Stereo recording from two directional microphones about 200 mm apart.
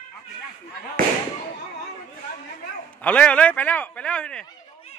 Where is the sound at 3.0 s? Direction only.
5° left (ahead or behind).